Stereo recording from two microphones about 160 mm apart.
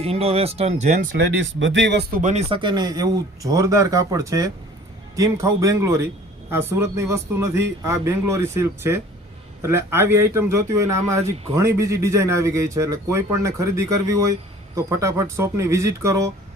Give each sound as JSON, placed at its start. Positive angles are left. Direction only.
{"t": 0.0, "sound": "speech", "side_deg": -40}
{"t": 1.2, "sound": "speech", "side_deg": -90}
{"t": 2.5, "sound": "a man's voice", "side_deg": -30}